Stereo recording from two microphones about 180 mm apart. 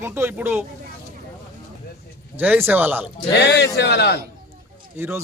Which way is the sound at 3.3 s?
70° left (ahead or behind).